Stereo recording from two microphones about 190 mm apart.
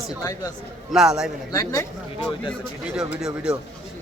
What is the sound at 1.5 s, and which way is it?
Speech, 15° left (ahead or behind).